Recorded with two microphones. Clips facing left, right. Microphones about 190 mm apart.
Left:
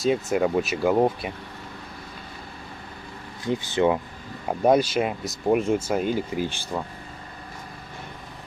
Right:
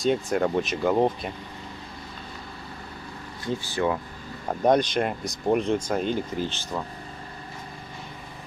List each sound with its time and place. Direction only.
0.0 s speech: 5° left (ahead or behind)
3.4 s speech: 20° left (ahead or behind)
4.5 s speech: 5° left (ahead or behind)